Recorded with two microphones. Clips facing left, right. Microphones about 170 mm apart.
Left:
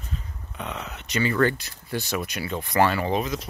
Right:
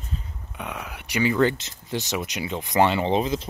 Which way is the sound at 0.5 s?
10° right (ahead or behind).